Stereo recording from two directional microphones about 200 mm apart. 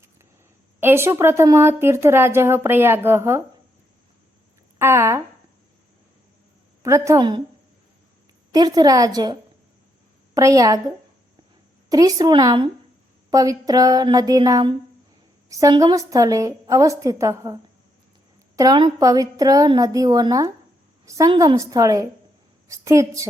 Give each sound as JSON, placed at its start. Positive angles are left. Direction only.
{"t": 0.8, "sound": "speech", "side_deg": -10}
{"t": 4.8, "sound": "speech", "side_deg": -15}
{"t": 6.8, "sound": "speech", "side_deg": -15}
{"t": 8.5, "sound": "a woman's voice", "side_deg": -20}
{"t": 11.9, "sound": "a woman's voice", "side_deg": -20}